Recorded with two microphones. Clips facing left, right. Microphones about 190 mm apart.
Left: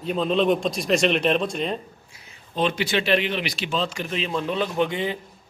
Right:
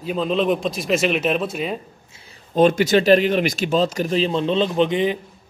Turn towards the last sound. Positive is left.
turn(degrees=-20)  # may be behind; listen again after turning